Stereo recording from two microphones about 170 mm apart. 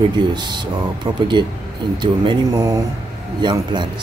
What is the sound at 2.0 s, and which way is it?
Speech, 25° right (ahead or behind).